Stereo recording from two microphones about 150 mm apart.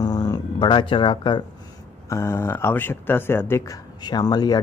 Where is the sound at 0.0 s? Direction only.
25° left (ahead or behind).